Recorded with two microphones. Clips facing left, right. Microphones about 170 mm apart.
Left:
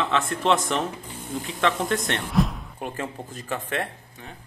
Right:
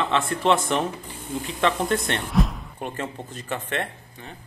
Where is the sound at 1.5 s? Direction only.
Centre (ahead or behind).